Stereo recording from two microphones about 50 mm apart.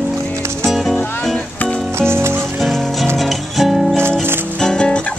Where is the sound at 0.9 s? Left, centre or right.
Centre.